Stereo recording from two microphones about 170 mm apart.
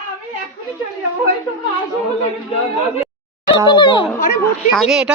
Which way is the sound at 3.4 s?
25° left (ahead or behind).